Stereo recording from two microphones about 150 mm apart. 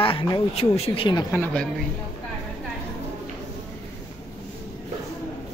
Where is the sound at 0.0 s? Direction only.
35° left (ahead or behind).